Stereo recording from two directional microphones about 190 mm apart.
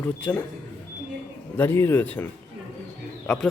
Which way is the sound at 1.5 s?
10° left (ahead or behind).